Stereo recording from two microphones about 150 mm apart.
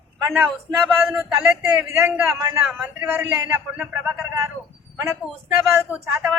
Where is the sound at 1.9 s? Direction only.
10° right (ahead or behind).